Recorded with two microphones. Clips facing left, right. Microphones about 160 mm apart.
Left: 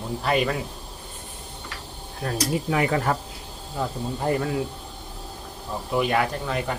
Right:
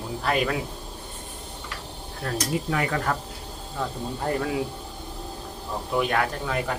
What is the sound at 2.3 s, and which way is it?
Speech, 25° left (ahead or behind).